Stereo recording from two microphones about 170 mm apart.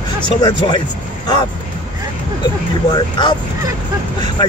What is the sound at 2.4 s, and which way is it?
Speech, 25° left (ahead or behind).